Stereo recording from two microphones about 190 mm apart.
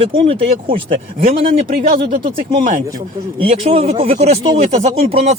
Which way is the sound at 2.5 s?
45° right (ahead or behind).